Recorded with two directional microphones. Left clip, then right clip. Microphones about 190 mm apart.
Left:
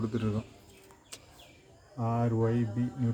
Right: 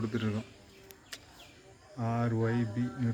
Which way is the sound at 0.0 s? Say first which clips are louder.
Left 1 dB; centre (ahead or behind).